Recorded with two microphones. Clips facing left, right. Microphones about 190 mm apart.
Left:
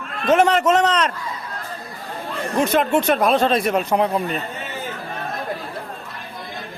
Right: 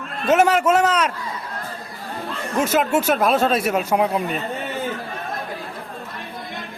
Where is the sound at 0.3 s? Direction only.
5° right (ahead or behind).